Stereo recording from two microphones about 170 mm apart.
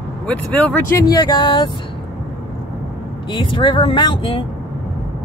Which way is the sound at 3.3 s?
30° left (ahead or behind).